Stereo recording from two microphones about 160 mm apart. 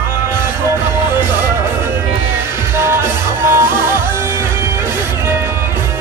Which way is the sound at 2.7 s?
15° right (ahead or behind).